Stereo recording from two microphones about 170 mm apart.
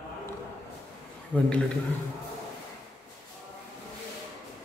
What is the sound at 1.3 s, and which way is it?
Speech, 10° left (ahead or behind).